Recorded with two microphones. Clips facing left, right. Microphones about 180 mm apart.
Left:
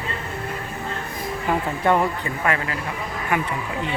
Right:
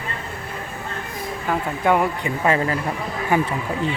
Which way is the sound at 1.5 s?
5° right (ahead or behind).